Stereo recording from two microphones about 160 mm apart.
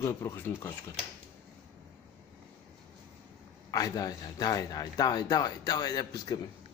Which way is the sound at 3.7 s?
25° left (ahead or behind).